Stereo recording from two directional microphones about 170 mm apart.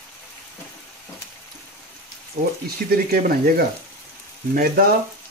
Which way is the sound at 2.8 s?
60° right (ahead or behind).